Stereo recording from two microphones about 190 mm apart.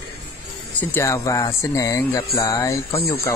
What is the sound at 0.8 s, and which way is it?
Speech, 10° left (ahead or behind).